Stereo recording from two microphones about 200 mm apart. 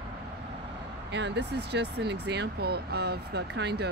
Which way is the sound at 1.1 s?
60° right (ahead or behind).